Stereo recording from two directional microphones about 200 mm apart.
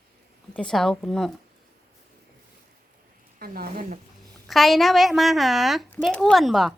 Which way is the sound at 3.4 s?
50° right (ahead or behind).